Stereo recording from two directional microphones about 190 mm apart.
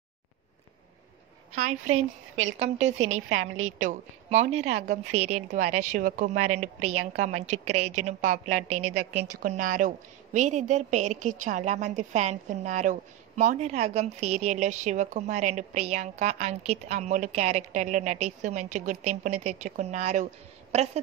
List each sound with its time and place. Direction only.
1.5 s a woman's voice: 40° right (ahead or behind)
9.1 s a woman's voice: 60° right (ahead or behind)
9.5 s a woman's voice: 45° right (ahead or behind)